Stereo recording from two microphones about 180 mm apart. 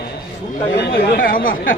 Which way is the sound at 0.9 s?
50° left (ahead or behind).